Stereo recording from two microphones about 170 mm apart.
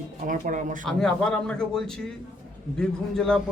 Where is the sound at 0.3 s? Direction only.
50° right (ahead or behind).